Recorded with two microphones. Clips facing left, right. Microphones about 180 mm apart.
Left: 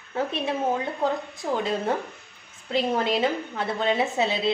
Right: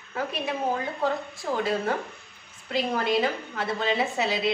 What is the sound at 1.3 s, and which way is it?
A woman's voice, 20° left (ahead or behind).